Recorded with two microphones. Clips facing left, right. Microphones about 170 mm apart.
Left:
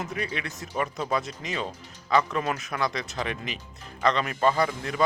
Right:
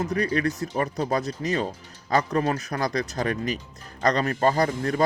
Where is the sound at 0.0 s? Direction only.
40° right (ahead or behind).